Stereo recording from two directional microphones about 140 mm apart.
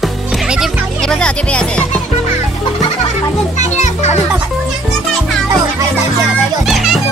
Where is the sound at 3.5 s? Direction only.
55° left (ahead or behind).